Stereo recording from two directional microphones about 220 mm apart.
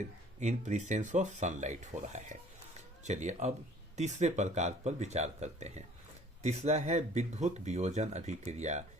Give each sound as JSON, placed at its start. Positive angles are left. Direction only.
{"t": 0.3, "sound": "speech", "side_deg": -30}